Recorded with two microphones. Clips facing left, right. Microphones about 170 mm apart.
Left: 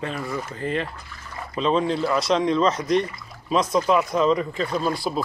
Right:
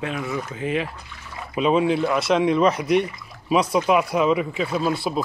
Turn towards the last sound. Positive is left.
turn(degrees=0)  # may be behind; listen again after turning